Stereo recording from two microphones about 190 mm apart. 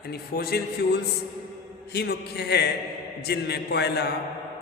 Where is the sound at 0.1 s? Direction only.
55° left (ahead or behind).